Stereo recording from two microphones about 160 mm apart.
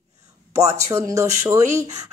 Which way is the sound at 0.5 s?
20° right (ahead or behind).